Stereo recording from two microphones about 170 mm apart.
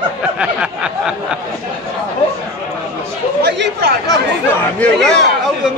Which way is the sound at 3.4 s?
85° right.